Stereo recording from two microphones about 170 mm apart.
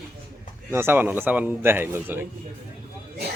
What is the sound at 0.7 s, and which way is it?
Speech, 15° right (ahead or behind).